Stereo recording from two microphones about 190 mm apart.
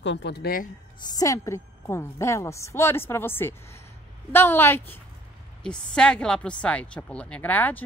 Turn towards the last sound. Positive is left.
turn(degrees=10)  # may be behind; listen again after turning